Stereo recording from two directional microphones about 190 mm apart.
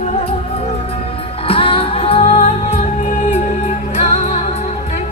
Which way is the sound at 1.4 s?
30° left (ahead or behind).